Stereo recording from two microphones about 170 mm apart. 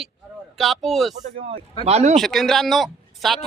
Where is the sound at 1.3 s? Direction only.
35° right (ahead or behind).